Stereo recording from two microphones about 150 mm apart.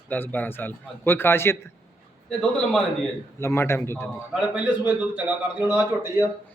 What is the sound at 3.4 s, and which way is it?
Speech, 15° left (ahead or behind).